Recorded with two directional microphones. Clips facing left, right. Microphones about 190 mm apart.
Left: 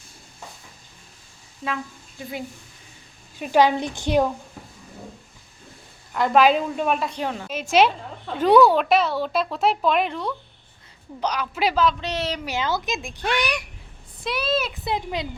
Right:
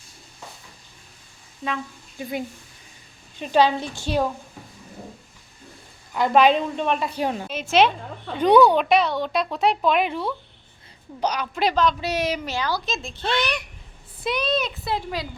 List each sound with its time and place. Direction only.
1.6 s speech: centre (ahead or behind)
3.3 s a woman's voice: 10° left (ahead or behind)
6.1 s speech: centre (ahead or behind)
7.1 s speech: 10° right (ahead or behind)
7.7 s speech: 10° left (ahead or behind)
11.9 s speech: 10° right (ahead or behind)
12.5 s a woman's voice: 20° left (ahead or behind); by 14.7 s 5° left (ahead or behind)
14.8 s speech: 20° left (ahead or behind)